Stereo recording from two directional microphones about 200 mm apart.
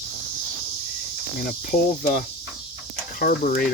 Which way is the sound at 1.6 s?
40° left (ahead or behind).